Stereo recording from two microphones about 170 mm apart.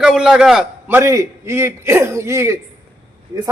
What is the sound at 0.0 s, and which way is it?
Speech, 5° right (ahead or behind).